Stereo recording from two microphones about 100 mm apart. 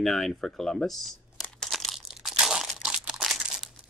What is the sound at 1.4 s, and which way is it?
Crumpling, 10° left (ahead or behind).